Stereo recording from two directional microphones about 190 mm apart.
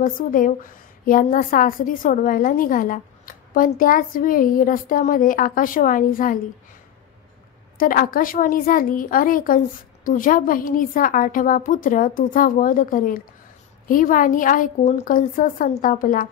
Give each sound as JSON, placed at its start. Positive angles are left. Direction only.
{"t": 0.0, "sound": "a woman's voice", "side_deg": 45}
{"t": 7.7, "sound": "a woman's voice", "side_deg": 45}